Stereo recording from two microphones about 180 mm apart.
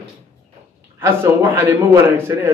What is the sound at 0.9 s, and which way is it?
Speech, 15° right (ahead or behind).